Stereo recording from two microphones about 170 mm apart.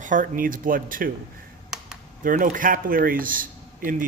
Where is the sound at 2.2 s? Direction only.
55° right (ahead or behind).